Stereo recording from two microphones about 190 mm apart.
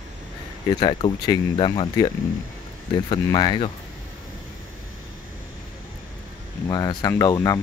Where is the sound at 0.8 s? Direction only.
25° left (ahead or behind).